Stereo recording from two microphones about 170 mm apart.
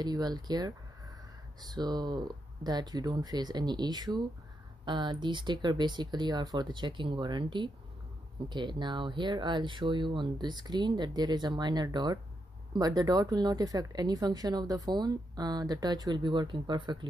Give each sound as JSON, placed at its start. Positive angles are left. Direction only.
{"t": 0.0, "sound": "speech", "side_deg": -25}